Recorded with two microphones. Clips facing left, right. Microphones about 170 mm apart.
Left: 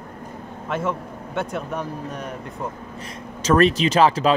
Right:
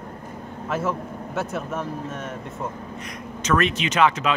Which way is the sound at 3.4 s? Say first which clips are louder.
Left 5 dB; 35° left (ahead or behind).